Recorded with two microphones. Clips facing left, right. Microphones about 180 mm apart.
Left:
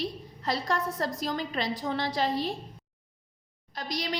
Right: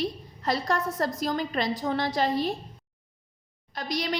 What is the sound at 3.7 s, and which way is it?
Speech, 55° right (ahead or behind).